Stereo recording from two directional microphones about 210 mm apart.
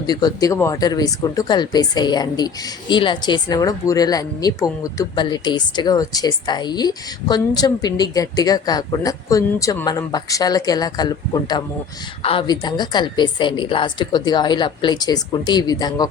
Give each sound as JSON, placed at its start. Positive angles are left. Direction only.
{"t": 0.1, "sound": "speech", "side_deg": 20}